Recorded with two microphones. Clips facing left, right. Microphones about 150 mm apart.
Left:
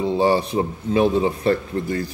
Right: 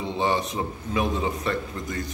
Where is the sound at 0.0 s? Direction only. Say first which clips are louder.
Left 7 dB; 35° left (ahead or behind).